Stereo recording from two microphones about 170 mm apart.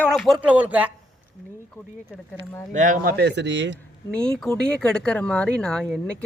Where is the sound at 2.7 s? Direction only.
50° right (ahead or behind); by 3.8 s 90° right.